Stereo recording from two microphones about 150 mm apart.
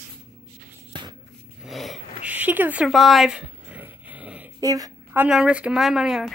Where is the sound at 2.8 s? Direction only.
Centre (ahead or behind).